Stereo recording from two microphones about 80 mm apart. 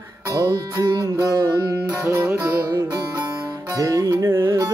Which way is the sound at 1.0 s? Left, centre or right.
Right.